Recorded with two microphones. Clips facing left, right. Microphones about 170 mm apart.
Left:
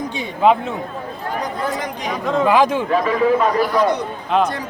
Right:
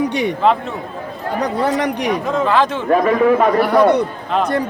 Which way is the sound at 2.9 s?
55° right (ahead or behind).